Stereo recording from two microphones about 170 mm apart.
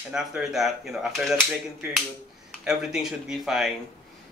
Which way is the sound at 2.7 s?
Centre (ahead or behind).